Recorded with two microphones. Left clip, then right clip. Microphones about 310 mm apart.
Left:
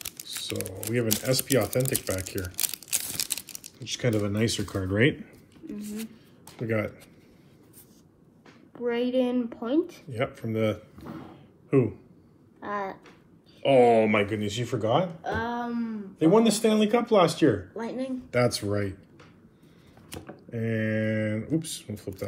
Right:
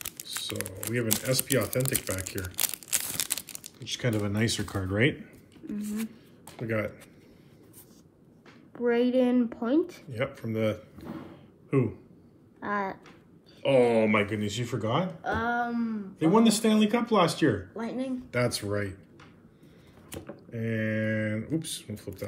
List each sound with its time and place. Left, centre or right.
0.8 s speech: centre
2.6 s a sound: centre
3.8 s speech: centre
6.6 s speech: centre
8.7 s a woman's voice: right
10.1 s speech: centre
12.5 s speech: right
13.7 s speech: centre
15.2 s a woman's voice: right
16.2 s speech: centre
17.7 s a sound: right
18.3 s speech: centre
20.4 s speech: centre